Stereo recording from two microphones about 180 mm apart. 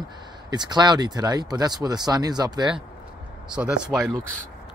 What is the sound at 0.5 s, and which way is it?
Speech, 25° right (ahead or behind).